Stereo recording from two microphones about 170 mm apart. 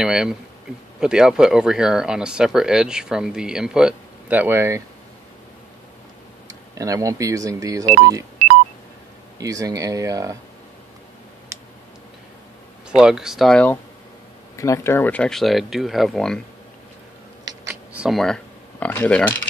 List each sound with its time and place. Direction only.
0.0 s a sound: 5° right (ahead or behind)
1.0 s speech: 5° right (ahead or behind)
6.8 s speech: 20° right (ahead or behind)
9.4 s speech: 20° right (ahead or behind)
12.9 s speech: 5° right (ahead or behind)
14.6 s speech: 15° left (ahead or behind)
17.6 s coin: 5° right (ahead or behind)